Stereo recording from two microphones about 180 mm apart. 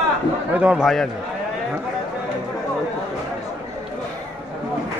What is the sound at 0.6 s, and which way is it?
Speech, 5° right (ahead or behind).